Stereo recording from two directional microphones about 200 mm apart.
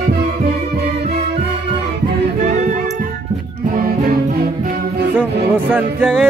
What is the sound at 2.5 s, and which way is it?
Music, 35° right (ahead or behind).